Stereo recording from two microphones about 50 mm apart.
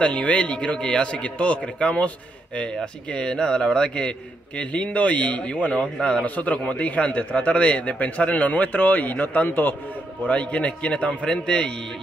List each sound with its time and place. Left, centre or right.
0.0 s a man's voice: left
6.2 s a man's voice: left
10.2 s a man's voice: left